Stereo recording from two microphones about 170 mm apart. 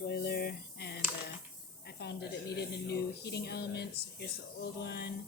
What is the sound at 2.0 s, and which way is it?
Speech, 75° left (ahead or behind).